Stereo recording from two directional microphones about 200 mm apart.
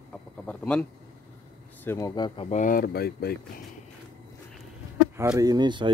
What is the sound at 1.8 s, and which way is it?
Speech, 15° left (ahead or behind).